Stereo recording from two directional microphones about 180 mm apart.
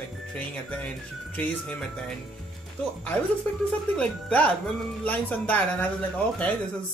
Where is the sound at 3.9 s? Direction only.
5° left (ahead or behind).